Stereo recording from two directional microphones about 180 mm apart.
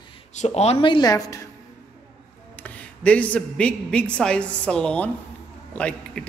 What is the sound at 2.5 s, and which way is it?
A woman's voice, 10° left (ahead or behind).